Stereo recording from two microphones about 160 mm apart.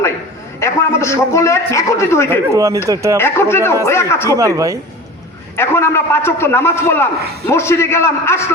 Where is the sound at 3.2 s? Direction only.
15° left (ahead or behind).